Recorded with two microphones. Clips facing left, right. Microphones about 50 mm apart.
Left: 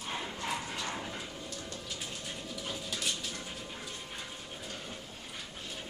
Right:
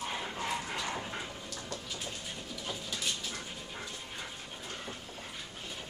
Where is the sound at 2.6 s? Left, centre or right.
Centre.